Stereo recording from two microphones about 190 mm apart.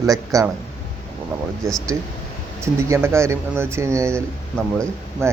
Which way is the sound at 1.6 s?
15° right (ahead or behind).